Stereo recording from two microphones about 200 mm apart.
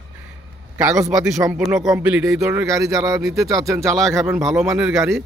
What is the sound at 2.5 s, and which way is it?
A man's voice, 15° right (ahead or behind).